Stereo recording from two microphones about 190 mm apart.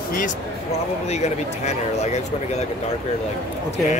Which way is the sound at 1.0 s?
35° left (ahead or behind).